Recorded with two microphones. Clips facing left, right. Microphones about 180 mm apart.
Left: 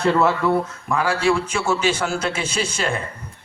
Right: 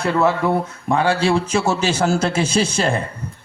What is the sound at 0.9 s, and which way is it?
A man's voice, 30° right (ahead or behind).